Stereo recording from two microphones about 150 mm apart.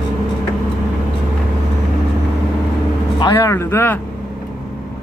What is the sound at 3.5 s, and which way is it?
Speech, 15° left (ahead or behind).